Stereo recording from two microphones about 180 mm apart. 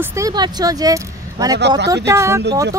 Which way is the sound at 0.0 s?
15° right (ahead or behind).